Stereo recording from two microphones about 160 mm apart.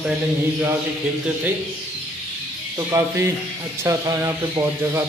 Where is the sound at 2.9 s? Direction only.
20° right (ahead or behind).